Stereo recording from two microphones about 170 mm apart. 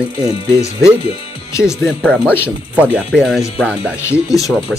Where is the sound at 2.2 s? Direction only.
10° left (ahead or behind).